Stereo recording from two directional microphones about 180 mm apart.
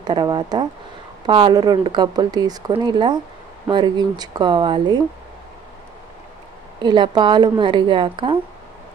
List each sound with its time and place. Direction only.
0.0 s speech: 25° right (ahead or behind)
6.8 s speech: 25° right (ahead or behind)